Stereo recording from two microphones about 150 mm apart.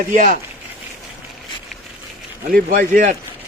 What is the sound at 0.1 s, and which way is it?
Speech, 60° right (ahead or behind).